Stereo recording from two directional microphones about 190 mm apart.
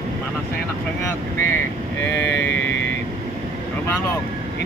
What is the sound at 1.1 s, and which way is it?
Speech, 10° left (ahead or behind).